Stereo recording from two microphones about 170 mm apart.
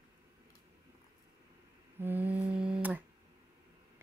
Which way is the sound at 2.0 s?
10° right (ahead or behind).